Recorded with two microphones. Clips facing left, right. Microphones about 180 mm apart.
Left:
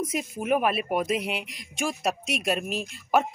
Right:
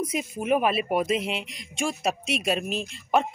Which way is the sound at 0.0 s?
Centre (ahead or behind).